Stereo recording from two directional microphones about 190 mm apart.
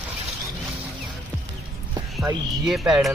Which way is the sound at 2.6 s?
5° right (ahead or behind).